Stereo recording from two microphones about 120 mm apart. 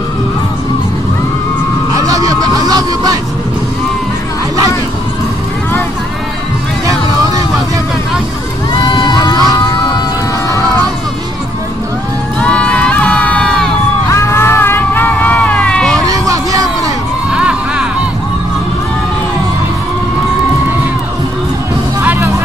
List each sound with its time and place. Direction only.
2.0 s a sound: 30° right (ahead or behind)
8.8 s crowd: 35° left (ahead or behind)
12.4 s crowd: 10° left (ahead or behind)
14.0 s music: 20° left (ahead or behind); by 16.0 s 5° left (ahead or behind)
16.1 s music: 30° right (ahead or behind)
17.3 s a sound: 5° right (ahead or behind)